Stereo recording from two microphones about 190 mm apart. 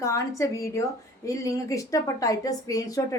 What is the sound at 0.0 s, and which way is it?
A woman's voice, 15° left (ahead or behind).